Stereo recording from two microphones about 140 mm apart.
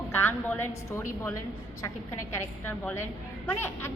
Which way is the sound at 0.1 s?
15° left (ahead or behind).